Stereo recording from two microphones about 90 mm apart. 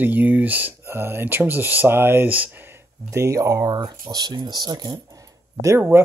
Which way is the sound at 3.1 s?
35° right (ahead or behind).